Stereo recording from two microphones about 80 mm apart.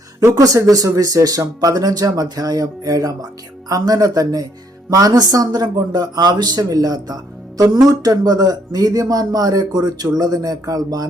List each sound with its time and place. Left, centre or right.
0.2 s a man's voice: right